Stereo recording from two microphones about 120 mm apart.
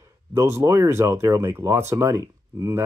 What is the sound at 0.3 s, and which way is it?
Speech, 20° right (ahead or behind).